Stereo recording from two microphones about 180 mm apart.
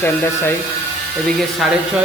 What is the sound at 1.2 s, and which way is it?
Speech, centre (ahead or behind).